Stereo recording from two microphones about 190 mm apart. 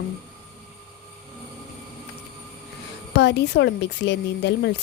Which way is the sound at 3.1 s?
65° left (ahead or behind).